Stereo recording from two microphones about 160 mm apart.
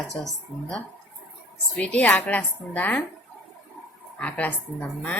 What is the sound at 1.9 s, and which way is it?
A woman's voice, 10° left (ahead or behind).